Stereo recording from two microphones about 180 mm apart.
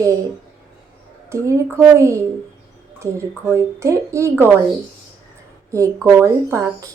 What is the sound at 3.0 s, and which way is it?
Speech, 15° right (ahead or behind).